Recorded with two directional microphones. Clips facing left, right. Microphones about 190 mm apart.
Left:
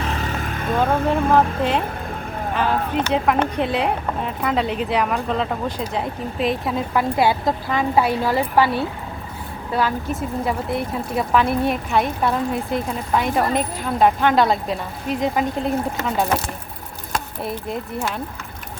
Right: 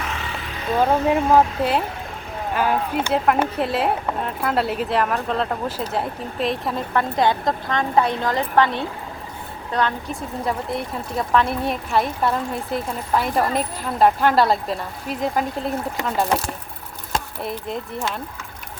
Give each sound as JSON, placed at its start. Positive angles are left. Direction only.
{"t": 0.0, "sound": "vehicle", "side_deg": 40}
{"t": 0.8, "sound": "speech", "side_deg": -10}
{"t": 17.4, "sound": "speech", "side_deg": 5}